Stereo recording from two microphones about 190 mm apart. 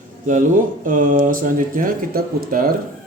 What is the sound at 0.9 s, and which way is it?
Speech, 45° right (ahead or behind).